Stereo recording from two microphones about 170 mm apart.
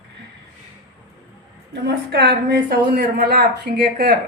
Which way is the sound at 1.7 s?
80° right.